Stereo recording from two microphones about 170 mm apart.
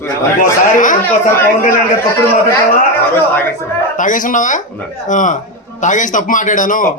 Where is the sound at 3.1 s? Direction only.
10° left (ahead or behind).